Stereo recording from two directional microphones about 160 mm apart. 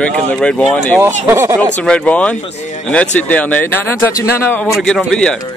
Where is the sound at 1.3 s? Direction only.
15° right (ahead or behind).